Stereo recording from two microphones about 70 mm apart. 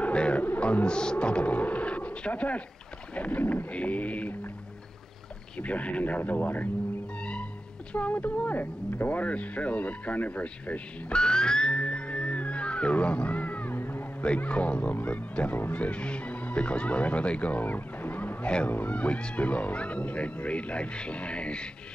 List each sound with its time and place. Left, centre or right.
0.0 s speech: centre
5.6 s speech: centre
7.9 s speech: left